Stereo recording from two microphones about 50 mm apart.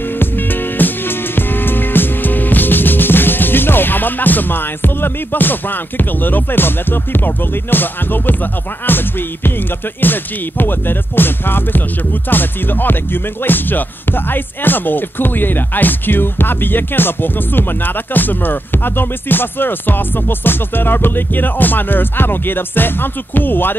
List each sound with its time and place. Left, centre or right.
0.2 s music: left